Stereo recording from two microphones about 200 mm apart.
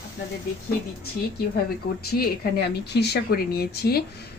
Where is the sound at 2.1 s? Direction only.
50° left (ahead or behind).